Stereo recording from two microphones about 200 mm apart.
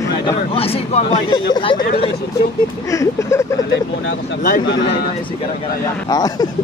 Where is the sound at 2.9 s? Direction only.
15° left (ahead or behind).